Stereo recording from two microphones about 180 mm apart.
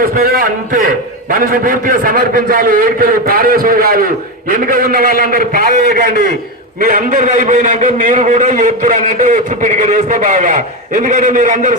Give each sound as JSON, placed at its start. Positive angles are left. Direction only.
{"t": 0.0, "sound": "a man's voice", "side_deg": -55}